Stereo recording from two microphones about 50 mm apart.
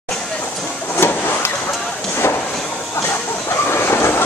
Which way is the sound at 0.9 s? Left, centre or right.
Left.